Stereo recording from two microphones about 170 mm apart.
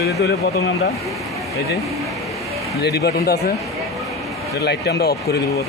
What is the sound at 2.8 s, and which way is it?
Speech, 75° left (ahead or behind).